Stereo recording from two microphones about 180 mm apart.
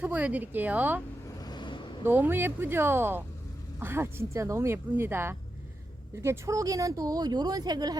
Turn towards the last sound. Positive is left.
turn(degrees=-20)  # may be behind; listen again after turning